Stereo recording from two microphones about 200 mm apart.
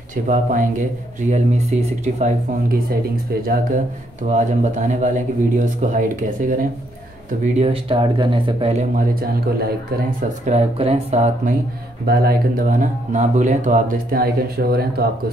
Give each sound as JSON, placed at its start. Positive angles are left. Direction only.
{"t": 0.1, "sound": "speech", "side_deg": -40}
{"t": 4.2, "sound": "speech", "side_deg": -40}
{"t": 7.4, "sound": "speech", "side_deg": -30}
{"t": 8.9, "sound": "speech", "side_deg": -45}
{"t": 10.5, "sound": "speech", "side_deg": -30}
{"t": 12.1, "sound": "speech", "side_deg": -45}